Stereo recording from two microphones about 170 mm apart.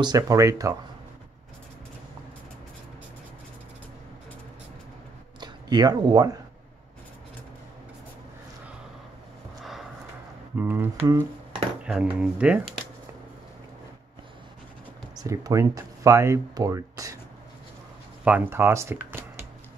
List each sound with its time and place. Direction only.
0.0 s speech: 20° right (ahead or behind)
5.4 s speech: 25° right (ahead or behind)
9.6 s a sound: centre (ahead or behind)
10.6 s speech: 15° right (ahead or behind)
15.1 s speech: 20° right (ahead or behind)
18.2 s speech: 10° right (ahead or behind)